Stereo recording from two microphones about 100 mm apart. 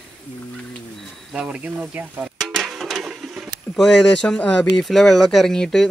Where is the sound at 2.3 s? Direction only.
Centre (ahead or behind).